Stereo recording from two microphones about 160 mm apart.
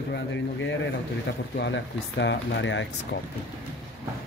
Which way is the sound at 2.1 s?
90° left.